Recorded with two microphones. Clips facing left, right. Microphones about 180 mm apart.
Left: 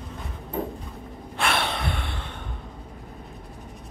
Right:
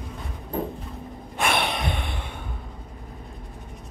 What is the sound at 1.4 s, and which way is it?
Gasp, 15° right (ahead or behind).